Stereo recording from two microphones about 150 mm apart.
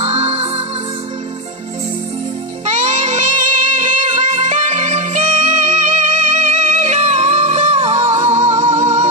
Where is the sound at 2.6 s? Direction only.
50° right (ahead or behind).